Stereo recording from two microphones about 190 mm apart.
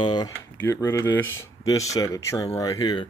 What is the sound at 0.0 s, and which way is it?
Speech, 20° left (ahead or behind).